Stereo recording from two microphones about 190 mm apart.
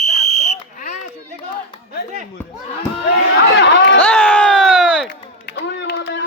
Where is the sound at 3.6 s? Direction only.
65° left (ahead or behind).